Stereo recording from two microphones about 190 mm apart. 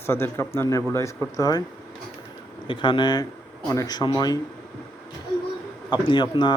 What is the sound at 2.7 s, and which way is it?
Speech, 25° left (ahead or behind).